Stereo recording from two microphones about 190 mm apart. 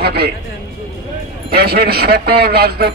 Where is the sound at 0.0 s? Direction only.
55° right (ahead or behind).